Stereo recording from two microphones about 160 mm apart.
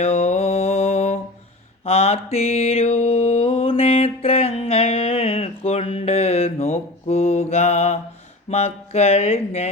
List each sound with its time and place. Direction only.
0.0 s mantra: 40° left (ahead or behind)
8.4 s speech: 40° left (ahead or behind)